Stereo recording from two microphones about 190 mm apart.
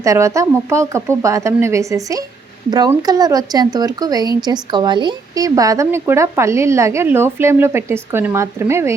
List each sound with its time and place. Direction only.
0.0 s speech: 15° right (ahead or behind)